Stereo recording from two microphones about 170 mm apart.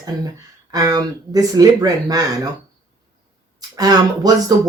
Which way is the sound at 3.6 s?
20° right (ahead or behind).